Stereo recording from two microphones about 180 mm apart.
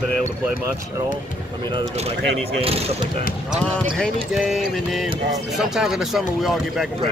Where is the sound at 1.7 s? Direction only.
35° right (ahead or behind).